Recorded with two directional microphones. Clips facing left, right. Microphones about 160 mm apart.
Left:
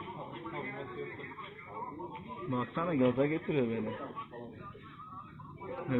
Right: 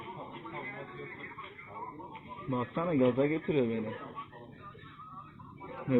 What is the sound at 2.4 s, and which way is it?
Speech, 10° right (ahead or behind).